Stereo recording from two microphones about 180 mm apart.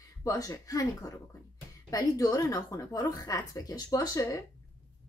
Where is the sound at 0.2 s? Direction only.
20° left (ahead or behind).